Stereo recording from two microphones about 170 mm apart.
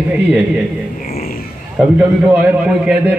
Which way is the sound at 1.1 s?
60° left (ahead or behind).